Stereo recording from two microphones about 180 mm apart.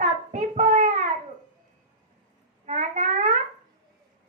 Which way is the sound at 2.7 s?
40° right (ahead or behind).